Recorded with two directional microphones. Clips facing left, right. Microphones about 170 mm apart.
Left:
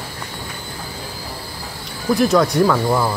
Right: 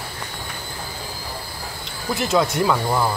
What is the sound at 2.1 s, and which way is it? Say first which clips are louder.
Speech: left 5 dB; 5° right (ahead or behind).